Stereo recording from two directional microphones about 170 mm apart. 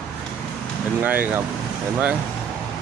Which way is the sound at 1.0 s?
10° right (ahead or behind).